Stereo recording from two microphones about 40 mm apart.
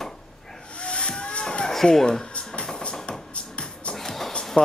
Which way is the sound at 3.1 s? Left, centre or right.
Left.